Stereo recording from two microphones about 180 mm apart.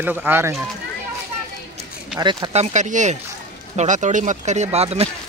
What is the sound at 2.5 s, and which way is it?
Speech, 40° right (ahead or behind).